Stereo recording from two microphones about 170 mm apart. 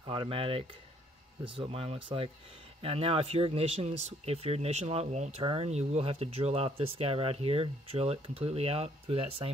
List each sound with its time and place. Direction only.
0.0 s speech: 30° right (ahead or behind)